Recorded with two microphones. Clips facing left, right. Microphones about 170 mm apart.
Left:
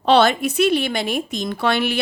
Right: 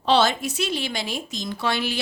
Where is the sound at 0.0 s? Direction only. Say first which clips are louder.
Left 5 dB; 60° left (ahead or behind).